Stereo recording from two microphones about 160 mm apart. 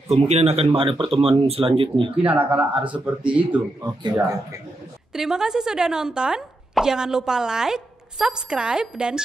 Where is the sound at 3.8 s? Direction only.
25° right (ahead or behind).